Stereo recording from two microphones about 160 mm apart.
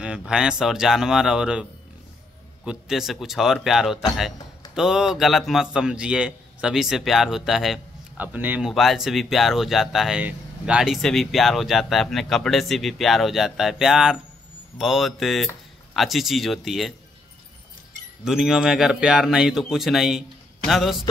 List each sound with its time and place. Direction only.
0.0 s a man's voice: 5° right (ahead or behind)
18.2 s a man's voice: 5° right (ahead or behind)